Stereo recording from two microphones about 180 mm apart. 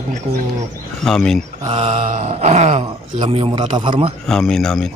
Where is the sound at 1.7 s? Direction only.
35° right (ahead or behind).